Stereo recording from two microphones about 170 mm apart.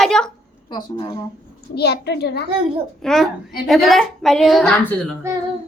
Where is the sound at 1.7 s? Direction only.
75° left (ahead or behind).